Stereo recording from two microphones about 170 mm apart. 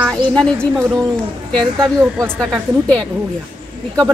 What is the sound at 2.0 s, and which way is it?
Speech, 15° right (ahead or behind).